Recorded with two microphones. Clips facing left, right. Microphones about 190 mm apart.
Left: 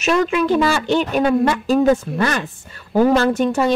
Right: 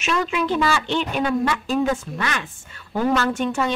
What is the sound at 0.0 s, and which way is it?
Speech, 45° left (ahead or behind).